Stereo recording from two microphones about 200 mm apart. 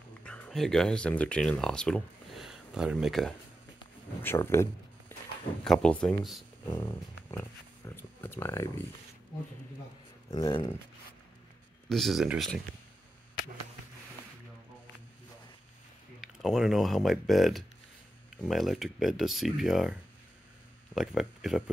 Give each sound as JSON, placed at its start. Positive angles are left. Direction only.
{"t": 0.2, "sound": "speech", "side_deg": 5}
{"t": 4.2, "sound": "speech", "side_deg": 10}
{"t": 6.6, "sound": "speech", "side_deg": 15}
{"t": 10.3, "sound": "speech", "side_deg": 25}
{"t": 11.9, "sound": "speech", "side_deg": 0}
{"t": 16.2, "sound": "speech", "side_deg": 0}